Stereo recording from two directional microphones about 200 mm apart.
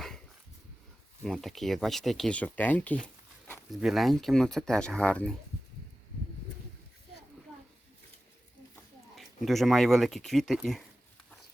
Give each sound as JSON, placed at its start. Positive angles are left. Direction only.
{"t": 1.2, "sound": "speech", "side_deg": 0}
{"t": 9.1, "sound": "speech", "side_deg": 0}